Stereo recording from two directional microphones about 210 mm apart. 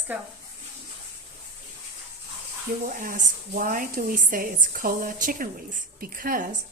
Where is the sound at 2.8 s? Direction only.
40° right (ahead or behind).